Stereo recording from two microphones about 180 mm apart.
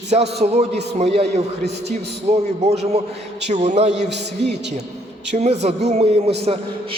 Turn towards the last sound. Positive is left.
turn(degrees=-35)  # may be behind; listen again after turning